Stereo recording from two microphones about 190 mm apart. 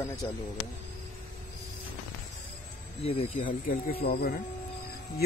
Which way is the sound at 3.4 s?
50° left (ahead or behind).